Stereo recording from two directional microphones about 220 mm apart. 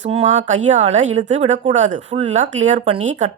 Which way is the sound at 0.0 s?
30° right (ahead or behind).